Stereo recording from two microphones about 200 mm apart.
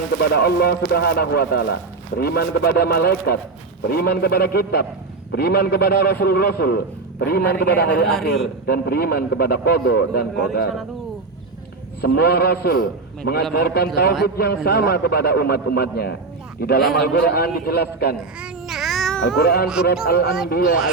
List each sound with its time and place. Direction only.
0.2 s a man's voice: 55° left (ahead or behind)
12.0 s a man's voice: 55° left (ahead or behind)
18.3 s meow: 5° right (ahead or behind)
19.4 s a man's voice: 55° left (ahead or behind)